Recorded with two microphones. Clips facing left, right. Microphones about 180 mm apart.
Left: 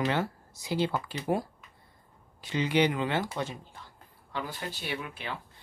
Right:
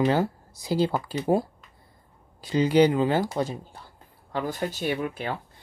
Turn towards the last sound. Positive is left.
turn(degrees=-45)  # may be behind; listen again after turning